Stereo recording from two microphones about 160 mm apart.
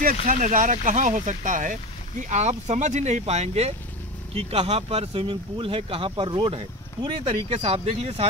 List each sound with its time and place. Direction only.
0.0 s speech: 55° right (ahead or behind); by 8.3 s 40° right (ahead or behind)